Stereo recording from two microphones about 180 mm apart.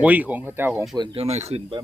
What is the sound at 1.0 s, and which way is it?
Speech, 30° right (ahead or behind).